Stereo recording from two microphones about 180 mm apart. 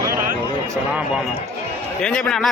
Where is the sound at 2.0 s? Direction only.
5° left (ahead or behind).